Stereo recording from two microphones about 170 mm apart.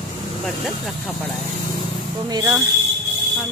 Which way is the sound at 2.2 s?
20° right (ahead or behind).